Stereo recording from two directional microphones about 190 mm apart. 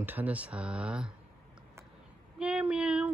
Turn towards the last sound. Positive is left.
turn(degrees=-5)  # may be behind; listen again after turning